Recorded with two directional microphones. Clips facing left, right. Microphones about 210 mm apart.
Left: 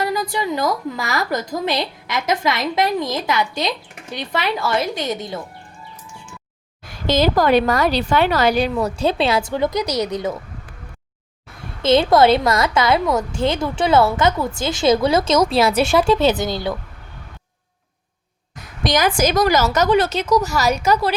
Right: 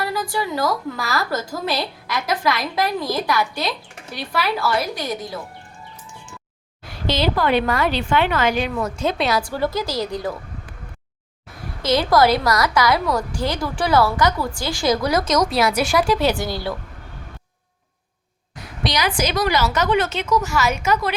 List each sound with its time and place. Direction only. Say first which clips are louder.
0.0 s a woman's voice: left 2 dB; 20° left (ahead or behind)
7.1 s a woman's voice: left 4 dB; 45° left (ahead or behind); by 10.3 s 20° left (ahead or behind)
11.8 s a woman's voice: left 3 dB; 25° left (ahead or behind)
18.8 s a woman's voice: left 4 dB; 45° left (ahead or behind)